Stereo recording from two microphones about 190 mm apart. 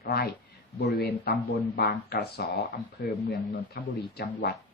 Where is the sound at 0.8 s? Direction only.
60° left (ahead or behind).